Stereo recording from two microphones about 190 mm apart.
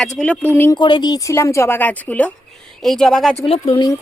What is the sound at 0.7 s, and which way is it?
A woman's voice, 25° left (ahead or behind).